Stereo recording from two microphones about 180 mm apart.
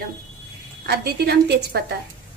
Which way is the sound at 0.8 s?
60° right (ahead or behind).